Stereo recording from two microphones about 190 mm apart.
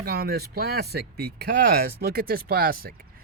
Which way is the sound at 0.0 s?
55° right (ahead or behind).